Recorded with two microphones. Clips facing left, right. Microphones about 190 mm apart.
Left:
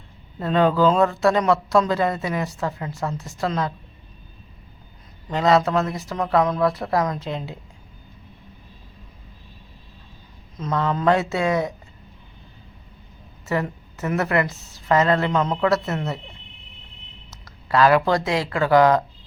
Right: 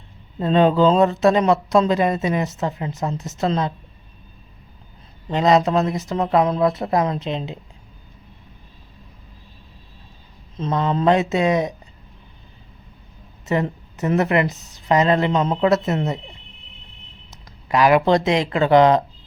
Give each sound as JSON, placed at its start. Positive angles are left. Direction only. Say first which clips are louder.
{"t": 0.3, "sound": "speech", "louder": "right 3 dB", "side_deg": -20}
{"t": 5.3, "sound": "speech", "louder": "right 2 dB", "side_deg": -20}
{"t": 10.6, "sound": "speech", "louder": "right 2 dB", "side_deg": -25}
{"t": 13.5, "sound": "speech", "louder": "right 3 dB", "side_deg": -20}
{"t": 17.3, "sound": "speech", "louder": "even", "side_deg": -15}